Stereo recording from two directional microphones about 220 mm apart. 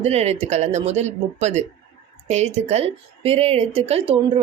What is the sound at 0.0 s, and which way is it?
A woman's voice, 30° right (ahead or behind).